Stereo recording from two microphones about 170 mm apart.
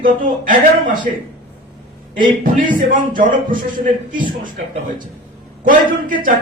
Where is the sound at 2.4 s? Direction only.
50° right (ahead or behind).